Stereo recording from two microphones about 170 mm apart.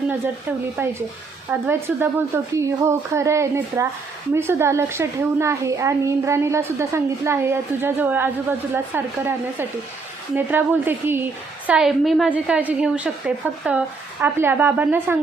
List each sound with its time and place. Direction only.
0.8 s a child's voice: 15° right (ahead or behind)